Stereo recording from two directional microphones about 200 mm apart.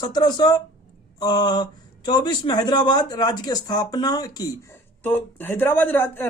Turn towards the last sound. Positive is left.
turn(degrees=10)  # may be behind; listen again after turning